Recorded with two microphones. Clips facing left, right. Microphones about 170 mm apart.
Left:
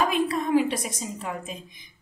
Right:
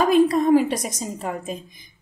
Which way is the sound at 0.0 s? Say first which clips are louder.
Right 8 dB; 40° right (ahead or behind).